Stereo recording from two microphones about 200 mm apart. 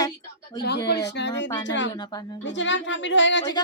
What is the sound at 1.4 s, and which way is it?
Speech, 20° left (ahead or behind).